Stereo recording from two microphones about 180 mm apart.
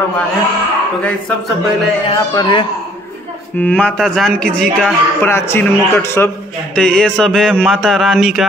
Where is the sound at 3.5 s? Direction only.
10° left (ahead or behind).